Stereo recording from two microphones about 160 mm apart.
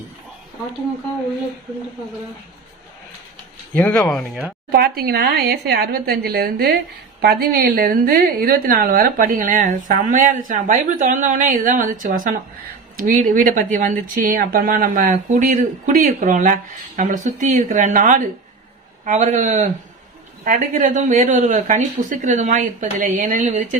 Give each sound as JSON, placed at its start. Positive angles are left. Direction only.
{"t": 3.8, "sound": "speech", "side_deg": 10}
{"t": 4.7, "sound": "a woman's voice", "side_deg": -75}